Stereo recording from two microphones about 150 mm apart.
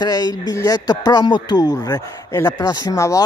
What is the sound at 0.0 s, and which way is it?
A man's voice, 25° left (ahead or behind).